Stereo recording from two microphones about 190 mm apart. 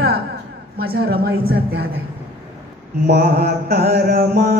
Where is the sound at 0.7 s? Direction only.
55° right (ahead or behind).